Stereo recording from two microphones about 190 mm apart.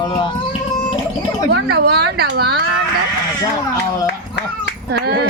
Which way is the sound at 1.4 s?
55° right (ahead or behind).